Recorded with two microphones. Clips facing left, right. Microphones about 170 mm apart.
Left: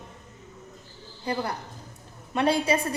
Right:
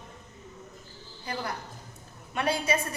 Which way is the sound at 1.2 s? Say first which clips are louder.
Left 5 dB; 30° left (ahead or behind).